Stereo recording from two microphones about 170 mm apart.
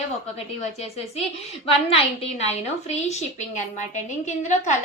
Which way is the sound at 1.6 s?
35° left (ahead or behind).